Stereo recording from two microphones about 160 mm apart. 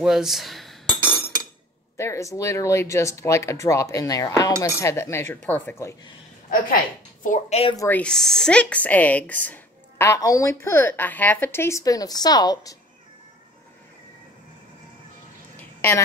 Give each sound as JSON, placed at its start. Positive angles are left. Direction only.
{"t": 0.0, "sound": "cutlery", "side_deg": -5}
{"t": 1.0, "sound": "chink", "side_deg": -25}
{"t": 2.0, "sound": "cutlery", "side_deg": 20}
{"t": 7.2, "sound": "a woman's voice", "side_deg": 45}
{"t": 7.7, "sound": "speech", "side_deg": 20}
{"t": 8.0, "sound": "speech", "side_deg": 5}